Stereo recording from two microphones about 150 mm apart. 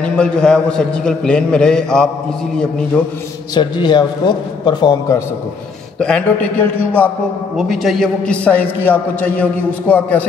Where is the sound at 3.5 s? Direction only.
30° left (ahead or behind).